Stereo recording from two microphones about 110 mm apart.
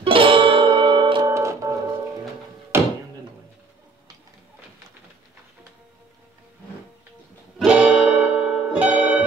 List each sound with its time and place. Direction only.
0.0 s music: 55° right (ahead or behind)
1.2 s music: 25° right (ahead or behind)
2.7 s a sound: 20° right (ahead or behind)
7.5 s music: 10° right (ahead or behind)